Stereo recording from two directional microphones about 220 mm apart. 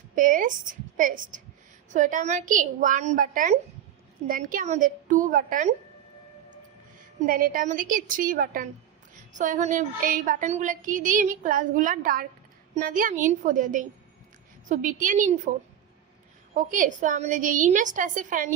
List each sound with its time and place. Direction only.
0.2 s speech: 40° right (ahead or behind)
7.3 s speech: 40° right (ahead or behind)
16.6 s speech: 35° right (ahead or behind)